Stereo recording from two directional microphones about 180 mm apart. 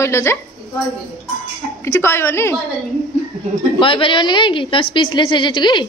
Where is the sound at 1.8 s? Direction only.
15° left (ahead or behind).